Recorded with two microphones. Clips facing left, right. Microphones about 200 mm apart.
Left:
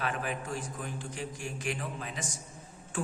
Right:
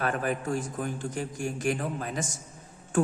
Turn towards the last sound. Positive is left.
turn(degrees=-45)  # may be behind; listen again after turning